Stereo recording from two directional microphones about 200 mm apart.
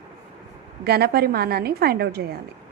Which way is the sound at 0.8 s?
50° right (ahead or behind).